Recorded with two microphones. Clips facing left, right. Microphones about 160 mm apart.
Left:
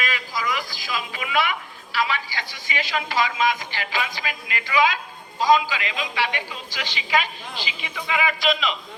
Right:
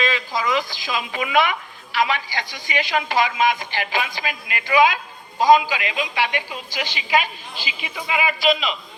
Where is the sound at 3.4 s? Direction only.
60° right (ahead or behind).